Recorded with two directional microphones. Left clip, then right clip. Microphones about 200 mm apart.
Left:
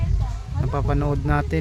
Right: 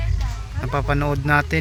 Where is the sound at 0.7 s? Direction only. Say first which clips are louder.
Right 3 dB; 5° left (ahead or behind).